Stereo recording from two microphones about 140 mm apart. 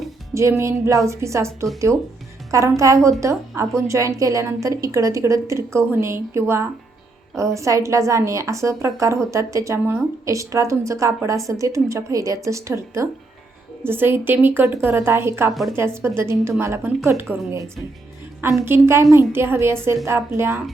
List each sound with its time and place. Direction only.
0.3 s a woman's voice: 20° right (ahead or behind)
18.6 s a woman's voice: 15° right (ahead or behind)